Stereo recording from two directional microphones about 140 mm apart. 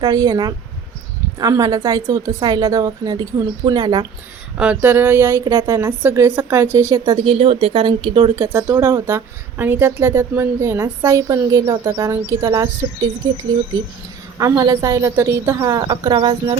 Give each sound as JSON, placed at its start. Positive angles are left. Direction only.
{"t": 0.0, "sound": "a woman's voice", "side_deg": -25}
{"t": 4.5, "sound": "a woman's voice", "side_deg": -10}
{"t": 7.3, "sound": "speech", "side_deg": -45}
{"t": 8.4, "sound": "a woman's voice", "side_deg": -15}
{"t": 14.3, "sound": "a woman's voice", "side_deg": -25}